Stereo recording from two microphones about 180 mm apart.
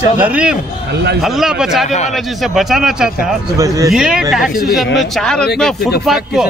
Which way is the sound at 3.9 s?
5° right (ahead or behind).